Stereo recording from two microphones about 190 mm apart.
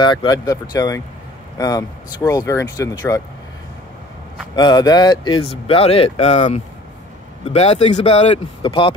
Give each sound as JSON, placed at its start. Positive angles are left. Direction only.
{"t": 0.0, "sound": "speech", "side_deg": 25}
{"t": 4.6, "sound": "speech", "side_deg": 20}